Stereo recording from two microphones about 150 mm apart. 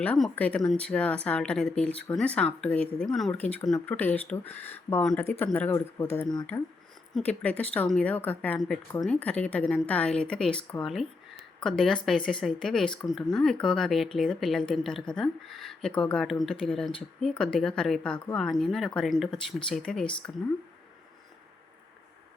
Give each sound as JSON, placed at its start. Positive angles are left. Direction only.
{"t": 0.0, "sound": "a woman's voice", "side_deg": 10}